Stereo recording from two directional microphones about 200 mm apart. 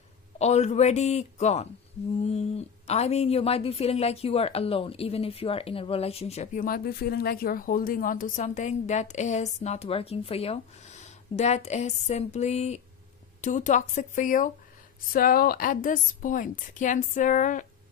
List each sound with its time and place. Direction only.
0.4 s a woman's voice: 35° left (ahead or behind)